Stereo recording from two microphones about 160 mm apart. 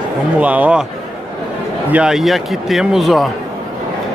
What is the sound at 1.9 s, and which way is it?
Speech, 5° right (ahead or behind).